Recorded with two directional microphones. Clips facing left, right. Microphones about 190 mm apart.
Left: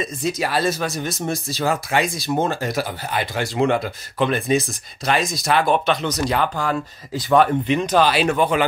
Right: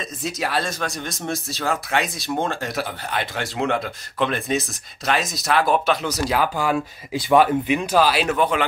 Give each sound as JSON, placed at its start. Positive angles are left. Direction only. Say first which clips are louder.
{"t": 0.0, "sound": "speech", "louder": "left 4 dB", "side_deg": 0}